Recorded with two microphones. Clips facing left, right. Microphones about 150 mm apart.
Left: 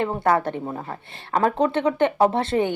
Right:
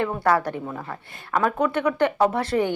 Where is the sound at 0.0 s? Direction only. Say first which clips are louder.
Left 1 dB; 25° left (ahead or behind).